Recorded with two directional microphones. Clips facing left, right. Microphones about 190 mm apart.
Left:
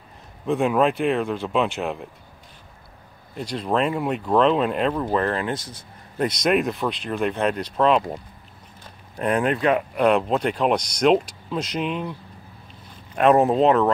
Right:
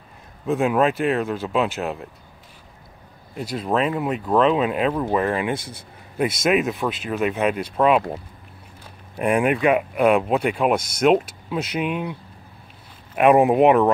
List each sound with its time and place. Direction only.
0.5 s speech: centre (ahead or behind)
3.3 s speech: 5° right (ahead or behind)